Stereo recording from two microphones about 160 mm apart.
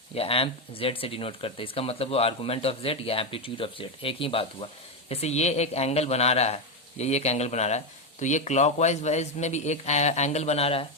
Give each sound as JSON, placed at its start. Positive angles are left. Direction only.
{"t": 0.1, "sound": "speech", "side_deg": 35}